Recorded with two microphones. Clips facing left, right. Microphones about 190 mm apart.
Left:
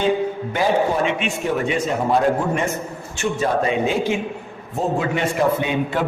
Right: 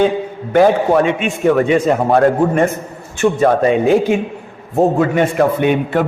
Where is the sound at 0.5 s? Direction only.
55° right (ahead or behind).